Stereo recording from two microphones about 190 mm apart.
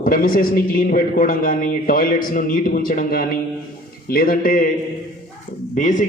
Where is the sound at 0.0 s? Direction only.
50° left (ahead or behind).